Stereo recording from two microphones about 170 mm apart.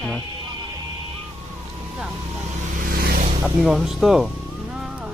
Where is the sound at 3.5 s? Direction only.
Centre (ahead or behind).